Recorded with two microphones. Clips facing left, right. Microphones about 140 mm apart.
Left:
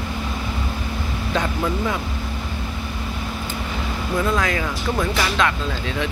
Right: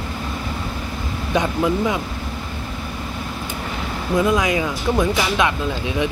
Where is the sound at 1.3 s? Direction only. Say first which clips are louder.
Right 4 dB; 15° right (ahead or behind).